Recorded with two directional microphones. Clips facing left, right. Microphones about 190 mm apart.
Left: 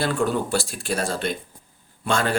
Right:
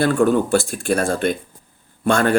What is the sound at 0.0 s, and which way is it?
Speech, 50° right (ahead or behind).